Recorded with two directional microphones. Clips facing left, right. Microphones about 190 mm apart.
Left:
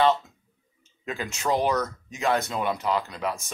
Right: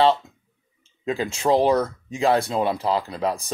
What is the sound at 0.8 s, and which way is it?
Speech, 30° right (ahead or behind).